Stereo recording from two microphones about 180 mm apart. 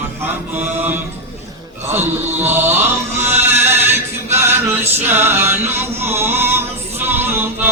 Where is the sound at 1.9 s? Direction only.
10° right (ahead or behind).